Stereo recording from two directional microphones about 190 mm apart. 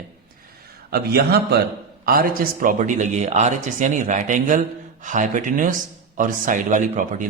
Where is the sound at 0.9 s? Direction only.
55° right (ahead or behind).